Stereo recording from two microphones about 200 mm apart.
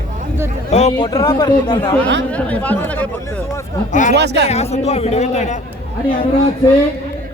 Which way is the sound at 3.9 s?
40° left (ahead or behind).